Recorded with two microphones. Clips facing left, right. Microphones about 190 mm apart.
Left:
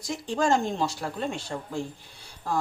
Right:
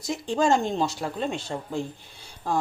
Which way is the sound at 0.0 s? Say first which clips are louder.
Right 3 dB; 25° right (ahead or behind).